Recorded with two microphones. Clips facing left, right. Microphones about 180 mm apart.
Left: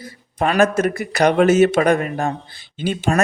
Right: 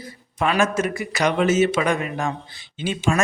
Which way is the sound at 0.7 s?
60° left (ahead or behind).